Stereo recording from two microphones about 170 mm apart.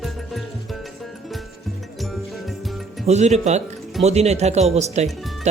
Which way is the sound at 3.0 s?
40° right (ahead or behind).